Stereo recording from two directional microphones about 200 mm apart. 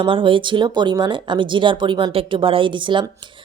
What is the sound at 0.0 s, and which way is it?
A woman's voice, 25° right (ahead or behind).